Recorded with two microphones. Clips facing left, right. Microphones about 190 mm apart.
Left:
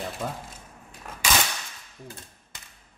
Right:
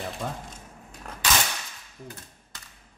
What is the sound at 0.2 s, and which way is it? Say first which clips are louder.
Speech: left 1 dB; centre (ahead or behind).